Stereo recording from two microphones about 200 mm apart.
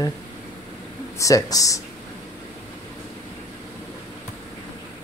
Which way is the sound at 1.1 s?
15° left (ahead or behind).